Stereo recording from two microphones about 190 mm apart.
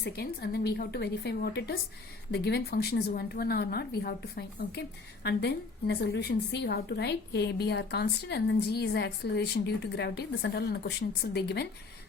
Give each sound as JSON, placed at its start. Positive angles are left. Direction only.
{"t": 0.0, "sound": "a woman's voice", "side_deg": 60}